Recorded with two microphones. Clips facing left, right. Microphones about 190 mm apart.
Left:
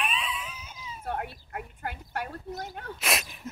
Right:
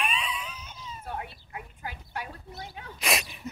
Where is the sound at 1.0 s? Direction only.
55° left (ahead or behind).